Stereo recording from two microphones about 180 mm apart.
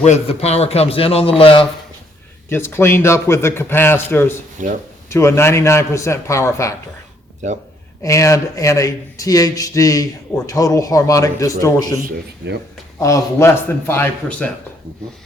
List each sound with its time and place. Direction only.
0.0 s a man's voice: 40° left (ahead or behind)
2.5 s a man's voice: 15° left (ahead or behind)
4.5 s speech: 45° right (ahead or behind)
5.0 s a man's voice: 15° left (ahead or behind)
7.4 s speech: 40° right (ahead or behind)
8.0 s speech: 15° left (ahead or behind)
11.9 s speech: 55° right (ahead or behind)
13.0 s a man's voice: 15° left (ahead or behind)